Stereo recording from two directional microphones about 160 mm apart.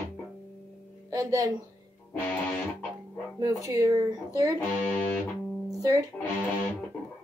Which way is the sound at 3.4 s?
20° right (ahead or behind).